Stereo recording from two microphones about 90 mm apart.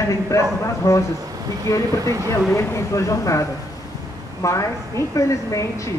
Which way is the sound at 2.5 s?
35° left (ahead or behind).